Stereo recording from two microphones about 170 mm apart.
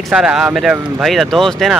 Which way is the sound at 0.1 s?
5° right (ahead or behind).